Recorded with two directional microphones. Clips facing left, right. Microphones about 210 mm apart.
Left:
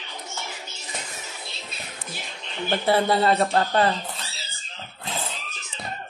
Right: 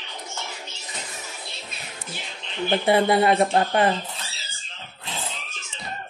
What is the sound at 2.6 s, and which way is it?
Speech, 15° right (ahead or behind).